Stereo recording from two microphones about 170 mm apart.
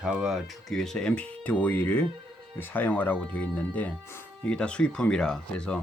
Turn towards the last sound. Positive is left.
turn(degrees=5)  # may be behind; listen again after turning